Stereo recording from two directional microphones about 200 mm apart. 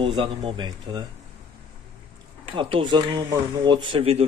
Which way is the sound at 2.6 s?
25° right (ahead or behind).